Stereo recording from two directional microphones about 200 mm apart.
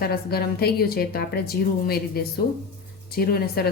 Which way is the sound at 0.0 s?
50° left (ahead or behind).